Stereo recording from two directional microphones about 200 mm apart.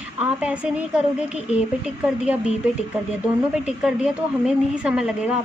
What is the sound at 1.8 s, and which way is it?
Speech, 5° right (ahead or behind).